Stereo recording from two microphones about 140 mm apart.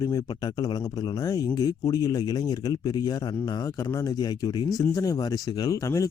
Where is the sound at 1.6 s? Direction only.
25° left (ahead or behind).